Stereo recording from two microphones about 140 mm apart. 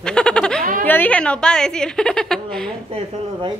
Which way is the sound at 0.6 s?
75° right (ahead or behind).